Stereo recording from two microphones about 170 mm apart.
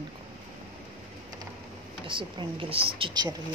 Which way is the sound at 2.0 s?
30° right (ahead or behind).